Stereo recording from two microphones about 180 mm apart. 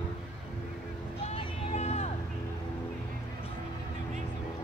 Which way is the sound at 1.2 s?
35° left (ahead or behind).